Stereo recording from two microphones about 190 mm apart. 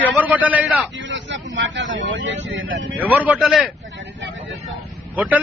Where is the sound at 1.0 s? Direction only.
75° right (ahead or behind).